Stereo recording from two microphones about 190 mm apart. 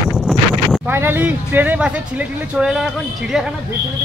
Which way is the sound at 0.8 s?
10° right (ahead or behind).